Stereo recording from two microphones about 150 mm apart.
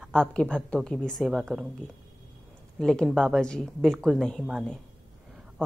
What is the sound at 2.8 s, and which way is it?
A woman's voice, 5° left (ahead or behind).